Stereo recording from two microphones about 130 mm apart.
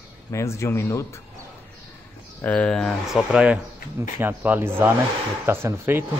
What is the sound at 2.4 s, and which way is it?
Speech, 10° left (ahead or behind).